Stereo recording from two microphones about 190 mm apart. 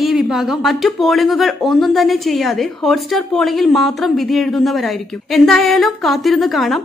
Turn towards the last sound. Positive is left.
turn(degrees=0)  # may be behind; listen again after turning